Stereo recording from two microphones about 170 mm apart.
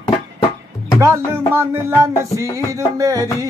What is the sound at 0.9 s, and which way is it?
Music, 15° right (ahead or behind).